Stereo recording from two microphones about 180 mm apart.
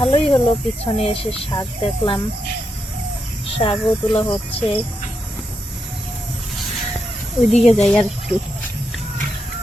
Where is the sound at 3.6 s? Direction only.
30° left (ahead or behind).